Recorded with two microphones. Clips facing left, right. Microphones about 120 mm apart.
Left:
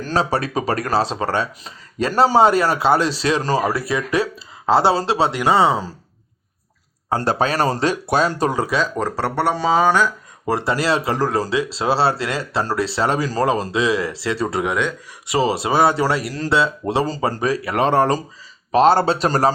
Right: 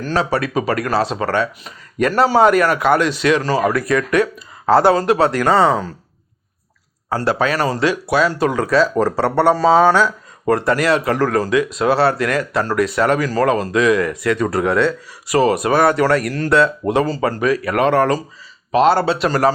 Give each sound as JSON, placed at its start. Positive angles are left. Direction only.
{"t": 0.0, "sound": "speech", "side_deg": 35}
{"t": 7.3, "sound": "speech", "side_deg": 30}
{"t": 8.7, "sound": "speech", "side_deg": -5}
{"t": 9.0, "sound": "speech", "side_deg": 10}
{"t": 10.5, "sound": "speech", "side_deg": 25}
{"t": 14.6, "sound": "speech", "side_deg": 15}